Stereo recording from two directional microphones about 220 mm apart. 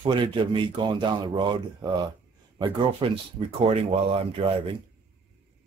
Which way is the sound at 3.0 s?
25° right (ahead or behind).